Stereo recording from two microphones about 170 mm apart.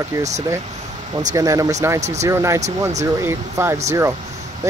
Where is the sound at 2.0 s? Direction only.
40° right (ahead or behind).